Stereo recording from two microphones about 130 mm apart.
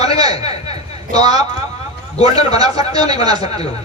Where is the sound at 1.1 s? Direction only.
30° right (ahead or behind).